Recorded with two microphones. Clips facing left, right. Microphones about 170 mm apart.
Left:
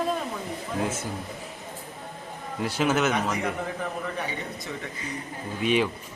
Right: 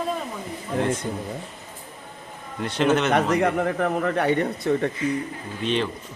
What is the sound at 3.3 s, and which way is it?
A man's voice, 65° right (ahead or behind).